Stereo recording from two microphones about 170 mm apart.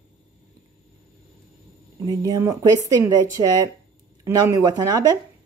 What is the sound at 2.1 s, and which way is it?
Speech, 25° right (ahead or behind).